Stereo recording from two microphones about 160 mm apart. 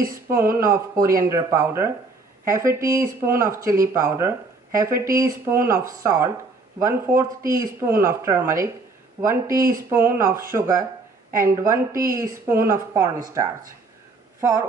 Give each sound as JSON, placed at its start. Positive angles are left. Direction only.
{"t": 0.3, "sound": "speech", "side_deg": -15}